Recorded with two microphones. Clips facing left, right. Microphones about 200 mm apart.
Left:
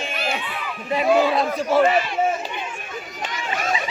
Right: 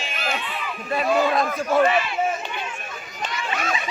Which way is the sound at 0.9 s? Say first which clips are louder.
Left 3 dB; 15° left (ahead or behind).